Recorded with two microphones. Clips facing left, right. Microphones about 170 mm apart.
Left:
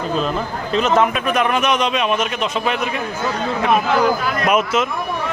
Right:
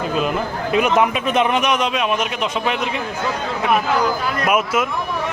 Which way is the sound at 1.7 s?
10° right (ahead or behind).